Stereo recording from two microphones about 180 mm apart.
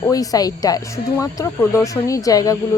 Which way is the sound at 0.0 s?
20° left (ahead or behind).